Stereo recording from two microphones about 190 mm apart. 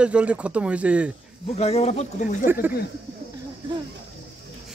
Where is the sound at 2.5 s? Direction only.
10° right (ahead or behind).